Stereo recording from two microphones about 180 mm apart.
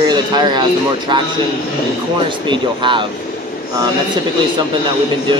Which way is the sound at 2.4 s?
25° right (ahead or behind).